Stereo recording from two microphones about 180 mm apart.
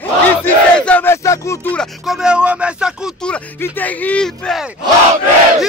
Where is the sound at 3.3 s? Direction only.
10° left (ahead or behind).